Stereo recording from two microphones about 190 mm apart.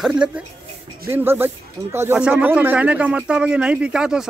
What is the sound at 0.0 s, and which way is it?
Speech, 5° right (ahead or behind).